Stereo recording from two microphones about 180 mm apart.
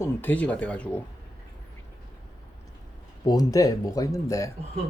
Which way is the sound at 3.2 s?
20° left (ahead or behind).